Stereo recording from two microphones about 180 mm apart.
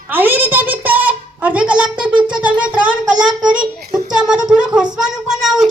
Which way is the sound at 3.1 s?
25° right (ahead or behind).